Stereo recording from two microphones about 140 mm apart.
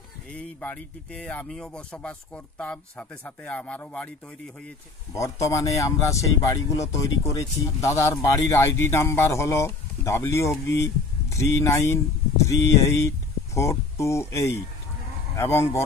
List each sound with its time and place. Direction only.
0.3 s speech: 10° left (ahead or behind)
5.1 s speech: 20° left (ahead or behind)